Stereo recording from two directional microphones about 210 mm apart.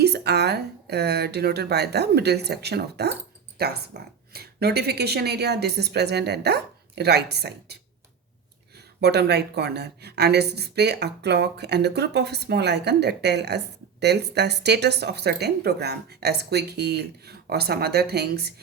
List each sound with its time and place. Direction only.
0.0 s speech: 50° right (ahead or behind)